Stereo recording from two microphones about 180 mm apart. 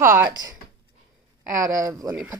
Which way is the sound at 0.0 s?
15° right (ahead or behind).